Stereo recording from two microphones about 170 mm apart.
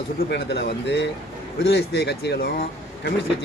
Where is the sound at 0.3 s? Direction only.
75° left (ahead or behind).